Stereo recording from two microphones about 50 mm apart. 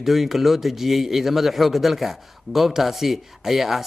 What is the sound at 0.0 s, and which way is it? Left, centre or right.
Speech, centre.